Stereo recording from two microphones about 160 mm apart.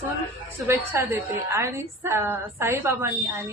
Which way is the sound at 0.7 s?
15° right (ahead or behind).